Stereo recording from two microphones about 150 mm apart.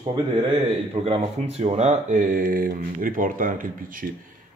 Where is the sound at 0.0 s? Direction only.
35° right (ahead or behind).